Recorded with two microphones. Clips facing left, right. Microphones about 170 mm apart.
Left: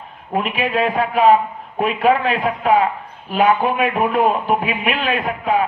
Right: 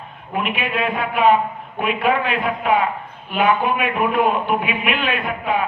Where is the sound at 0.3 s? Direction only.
35° left (ahead or behind).